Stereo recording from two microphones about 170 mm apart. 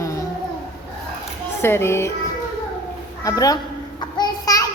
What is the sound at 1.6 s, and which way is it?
Speech, 15° left (ahead or behind).